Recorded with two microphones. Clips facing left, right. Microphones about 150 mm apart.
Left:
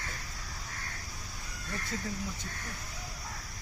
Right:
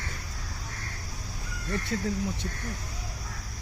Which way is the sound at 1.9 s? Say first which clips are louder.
Right 7 dB; 65° right (ahead or behind).